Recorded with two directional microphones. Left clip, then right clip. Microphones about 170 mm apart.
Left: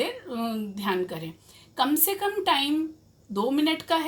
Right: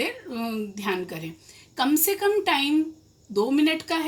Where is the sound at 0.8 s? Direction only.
40° left (ahead or behind).